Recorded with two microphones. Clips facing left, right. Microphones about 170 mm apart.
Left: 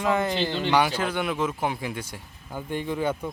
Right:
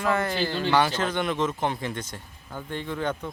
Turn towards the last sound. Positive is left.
turn(degrees=10)  # may be behind; listen again after turning